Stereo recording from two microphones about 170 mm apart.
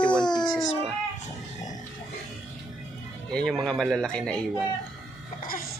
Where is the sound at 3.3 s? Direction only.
5° left (ahead or behind).